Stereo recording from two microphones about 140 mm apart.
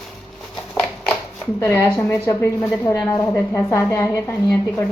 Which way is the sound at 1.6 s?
20° left (ahead or behind).